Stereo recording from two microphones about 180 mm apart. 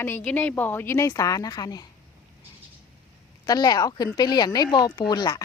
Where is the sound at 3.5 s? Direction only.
20° left (ahead or behind).